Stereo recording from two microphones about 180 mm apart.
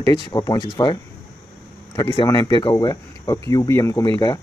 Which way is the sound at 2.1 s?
30° left (ahead or behind).